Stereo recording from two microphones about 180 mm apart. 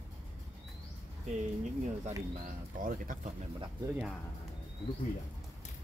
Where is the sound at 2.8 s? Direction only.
45° right (ahead or behind).